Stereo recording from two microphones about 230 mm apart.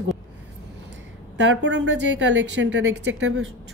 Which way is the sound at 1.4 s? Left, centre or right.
Right.